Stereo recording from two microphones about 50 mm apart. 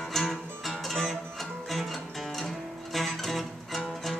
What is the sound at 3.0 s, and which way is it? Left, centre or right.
Music, centre.